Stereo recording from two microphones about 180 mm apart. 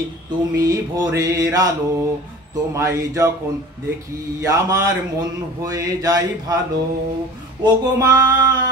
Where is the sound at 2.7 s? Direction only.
15° right (ahead or behind).